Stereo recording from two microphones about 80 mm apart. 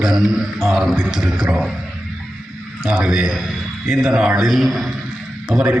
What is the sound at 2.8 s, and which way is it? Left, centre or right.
A man's voice, centre.